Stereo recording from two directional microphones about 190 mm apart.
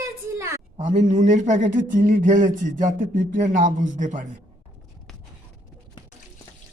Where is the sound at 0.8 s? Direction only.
40° right (ahead or behind).